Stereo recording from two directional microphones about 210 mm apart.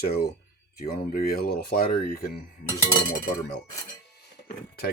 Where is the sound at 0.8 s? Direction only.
45° left (ahead or behind).